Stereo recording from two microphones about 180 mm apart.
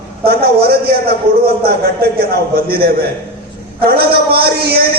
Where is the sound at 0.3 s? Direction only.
60° right (ahead or behind).